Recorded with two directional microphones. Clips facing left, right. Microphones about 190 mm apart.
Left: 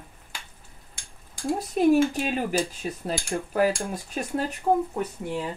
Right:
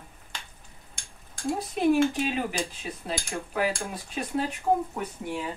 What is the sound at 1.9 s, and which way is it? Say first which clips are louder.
Speech: left 2 dB; 40° left (ahead or behind).